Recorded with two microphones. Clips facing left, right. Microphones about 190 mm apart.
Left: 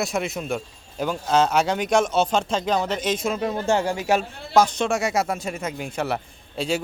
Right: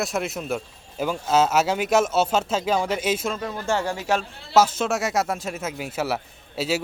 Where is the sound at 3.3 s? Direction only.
20° left (ahead or behind).